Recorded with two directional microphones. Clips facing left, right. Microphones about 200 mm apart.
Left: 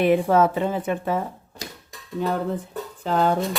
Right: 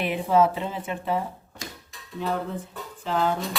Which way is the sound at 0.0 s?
50° left (ahead or behind).